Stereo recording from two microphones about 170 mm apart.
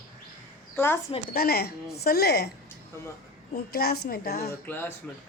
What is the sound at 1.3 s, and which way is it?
A woman's voice, 65° left (ahead or behind).